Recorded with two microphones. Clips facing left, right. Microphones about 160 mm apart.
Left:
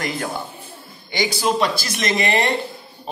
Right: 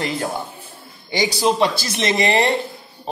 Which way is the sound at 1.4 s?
25° right (ahead or behind).